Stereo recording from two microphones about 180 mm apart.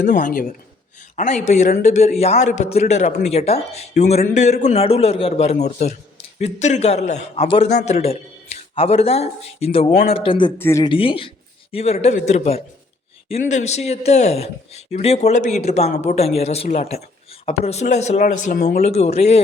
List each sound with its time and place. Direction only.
0.0 s speech: 45° left (ahead or behind)
2.1 s a man's voice: 35° left (ahead or behind)
10.6 s speech: 15° left (ahead or behind)
10.8 s a man's voice: 30° left (ahead or behind)